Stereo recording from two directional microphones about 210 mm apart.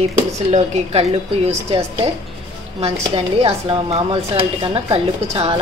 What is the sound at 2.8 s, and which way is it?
A woman's voice, 30° right (ahead or behind).